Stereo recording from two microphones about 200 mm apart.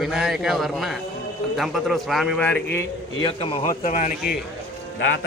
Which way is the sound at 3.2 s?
25° left (ahead or behind).